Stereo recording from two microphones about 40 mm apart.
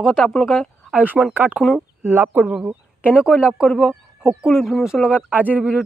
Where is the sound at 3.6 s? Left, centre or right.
Centre.